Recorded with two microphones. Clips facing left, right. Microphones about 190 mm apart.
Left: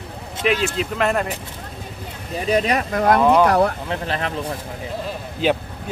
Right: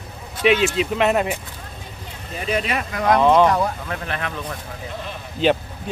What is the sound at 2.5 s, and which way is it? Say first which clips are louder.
Speech: left 4 dB; 35° left (ahead or behind).